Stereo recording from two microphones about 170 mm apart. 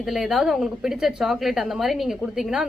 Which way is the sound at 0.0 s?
Centre (ahead or behind).